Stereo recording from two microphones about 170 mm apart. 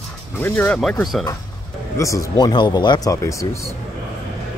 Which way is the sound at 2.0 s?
20° left (ahead or behind).